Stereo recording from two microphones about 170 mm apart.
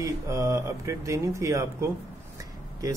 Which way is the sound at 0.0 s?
20° right (ahead or behind).